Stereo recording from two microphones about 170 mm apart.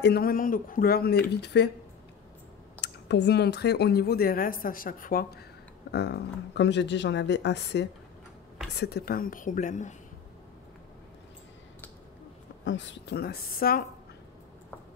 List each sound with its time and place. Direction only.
0.0 s speech: 65° left (ahead or behind)
1.3 s speech: 75° left (ahead or behind)
2.8 s speech: 90° left; by 5.4 s 55° left (ahead or behind)
5.9 s speech: 80° left
8.7 s a woman's voice: 70° left (ahead or behind); by 9.9 s 50° left (ahead or behind)
12.6 s speech: 90° left; by 13.8 s 60° left (ahead or behind)